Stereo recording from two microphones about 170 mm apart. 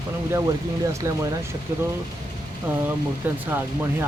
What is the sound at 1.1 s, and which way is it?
Speech, 20° right (ahead or behind).